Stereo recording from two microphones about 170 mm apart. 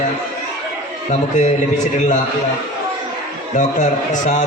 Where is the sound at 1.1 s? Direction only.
45° left (ahead or behind).